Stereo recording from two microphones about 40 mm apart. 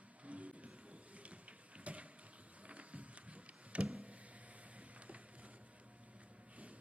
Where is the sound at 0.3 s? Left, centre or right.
Right.